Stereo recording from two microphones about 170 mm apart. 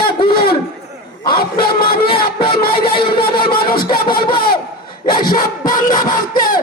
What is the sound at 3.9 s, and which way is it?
Speech, 60° left (ahead or behind).